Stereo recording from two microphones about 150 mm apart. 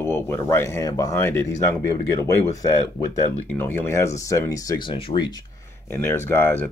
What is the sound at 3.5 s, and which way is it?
Speech, 15° left (ahead or behind).